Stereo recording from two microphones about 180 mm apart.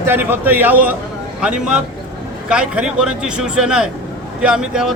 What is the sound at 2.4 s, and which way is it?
Speech, 5° right (ahead or behind).